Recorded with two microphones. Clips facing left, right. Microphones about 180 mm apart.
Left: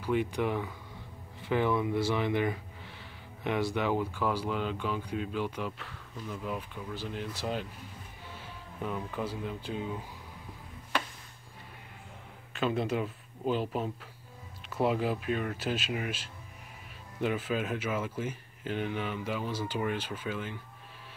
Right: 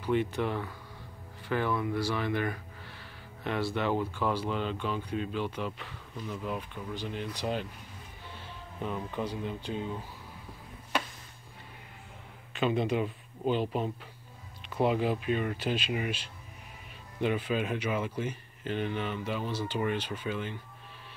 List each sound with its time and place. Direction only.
0.0 s speech: 5° left (ahead or behind)
8.8 s speech: 5° left (ahead or behind)
12.5 s speech: centre (ahead or behind)